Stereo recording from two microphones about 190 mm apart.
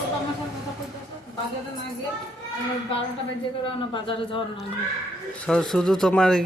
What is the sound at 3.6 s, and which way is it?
Speech, 25° left (ahead or behind).